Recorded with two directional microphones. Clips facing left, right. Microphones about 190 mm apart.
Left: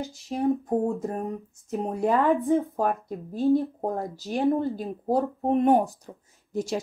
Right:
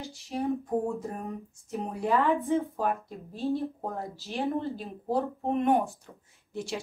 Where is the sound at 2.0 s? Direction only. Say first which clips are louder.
Left 3 dB; 50° left (ahead or behind).